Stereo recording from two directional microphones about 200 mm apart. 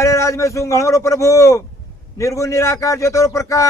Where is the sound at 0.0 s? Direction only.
15° left (ahead or behind).